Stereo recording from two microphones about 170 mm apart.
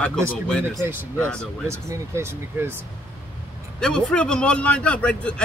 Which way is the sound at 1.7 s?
15° right (ahead or behind).